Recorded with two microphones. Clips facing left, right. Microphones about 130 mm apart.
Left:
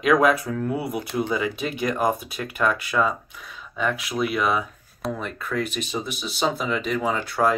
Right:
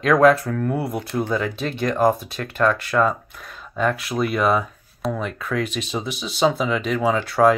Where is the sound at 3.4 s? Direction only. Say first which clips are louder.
Right 5 dB; 45° right (ahead or behind).